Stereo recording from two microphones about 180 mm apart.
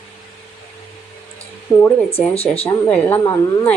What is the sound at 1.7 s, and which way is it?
Speech, 15° left (ahead or behind).